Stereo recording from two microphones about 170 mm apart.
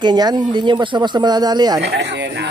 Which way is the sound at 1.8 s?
80° right.